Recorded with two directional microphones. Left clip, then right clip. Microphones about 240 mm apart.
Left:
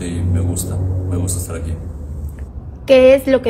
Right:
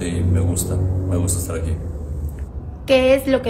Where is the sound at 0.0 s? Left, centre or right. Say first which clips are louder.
Right 1 dB; centre.